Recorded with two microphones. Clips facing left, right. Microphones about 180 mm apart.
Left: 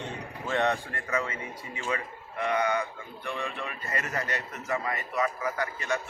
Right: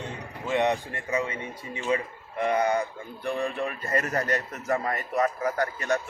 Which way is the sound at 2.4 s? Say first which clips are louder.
Right 3 dB; 35° right (ahead or behind).